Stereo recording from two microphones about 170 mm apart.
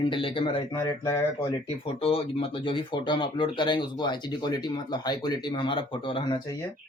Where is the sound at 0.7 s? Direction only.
15° left (ahead or behind).